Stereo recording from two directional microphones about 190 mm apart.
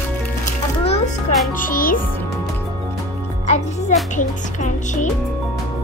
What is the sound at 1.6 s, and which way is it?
Music, 45° left (ahead or behind).